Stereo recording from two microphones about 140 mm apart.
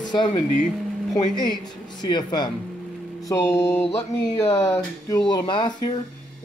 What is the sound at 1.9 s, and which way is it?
Speech, 30° left (ahead or behind).